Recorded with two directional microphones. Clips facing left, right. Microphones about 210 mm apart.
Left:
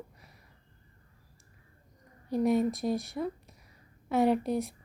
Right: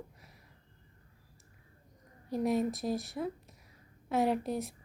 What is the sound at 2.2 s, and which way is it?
A woman's voice, centre (ahead or behind).